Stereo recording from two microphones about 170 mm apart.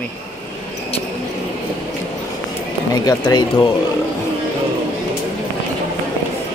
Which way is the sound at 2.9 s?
25° left (ahead or behind).